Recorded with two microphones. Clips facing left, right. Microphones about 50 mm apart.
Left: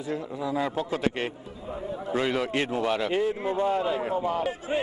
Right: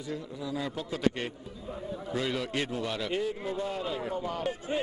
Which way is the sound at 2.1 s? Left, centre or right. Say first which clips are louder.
Left 5 dB; left.